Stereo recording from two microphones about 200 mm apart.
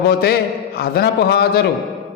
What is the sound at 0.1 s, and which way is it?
A man's voice, 50° left (ahead or behind).